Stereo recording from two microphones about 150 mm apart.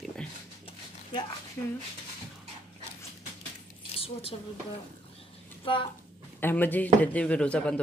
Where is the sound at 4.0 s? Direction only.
40° left (ahead or behind).